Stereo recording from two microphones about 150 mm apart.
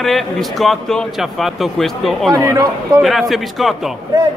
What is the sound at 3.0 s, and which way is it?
Speech, centre (ahead or behind).